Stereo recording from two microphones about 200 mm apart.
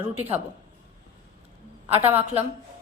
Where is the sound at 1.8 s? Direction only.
10° right (ahead or behind).